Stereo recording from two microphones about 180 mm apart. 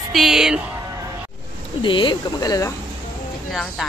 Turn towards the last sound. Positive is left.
turn(degrees=0)  # may be behind; listen again after turning